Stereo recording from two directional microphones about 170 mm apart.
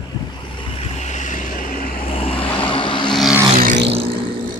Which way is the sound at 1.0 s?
45° left (ahead or behind).